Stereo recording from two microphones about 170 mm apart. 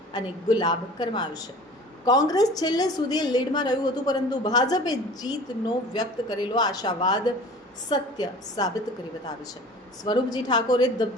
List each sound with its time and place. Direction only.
0.1 s a woman's voice: 25° left (ahead or behind)
10.0 s a woman's voice: 25° left (ahead or behind)